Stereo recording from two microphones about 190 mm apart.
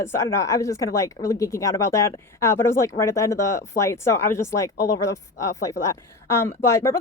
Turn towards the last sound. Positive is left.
turn(degrees=15)  # may be behind; listen again after turning